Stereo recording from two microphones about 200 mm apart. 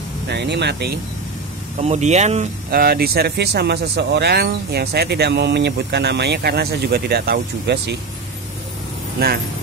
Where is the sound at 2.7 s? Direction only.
50° right (ahead or behind).